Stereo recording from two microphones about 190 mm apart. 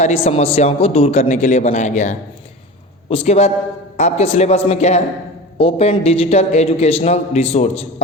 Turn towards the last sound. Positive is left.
turn(degrees=30)  # may be behind; listen again after turning